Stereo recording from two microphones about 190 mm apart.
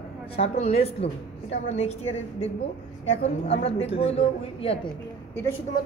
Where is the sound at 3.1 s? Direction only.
30° left (ahead or behind).